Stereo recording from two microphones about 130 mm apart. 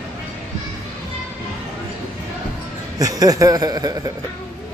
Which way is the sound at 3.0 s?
30° right (ahead or behind).